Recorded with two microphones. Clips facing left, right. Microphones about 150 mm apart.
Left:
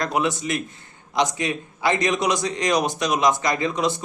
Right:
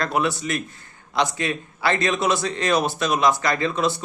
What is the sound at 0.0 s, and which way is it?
A man's voice, 20° left (ahead or behind).